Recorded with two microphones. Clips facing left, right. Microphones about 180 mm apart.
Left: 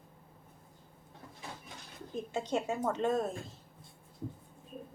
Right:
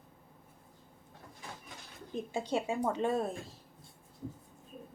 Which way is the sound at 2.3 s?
10° right (ahead or behind).